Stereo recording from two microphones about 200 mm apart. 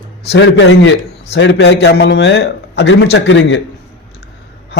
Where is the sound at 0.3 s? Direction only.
65° left (ahead or behind).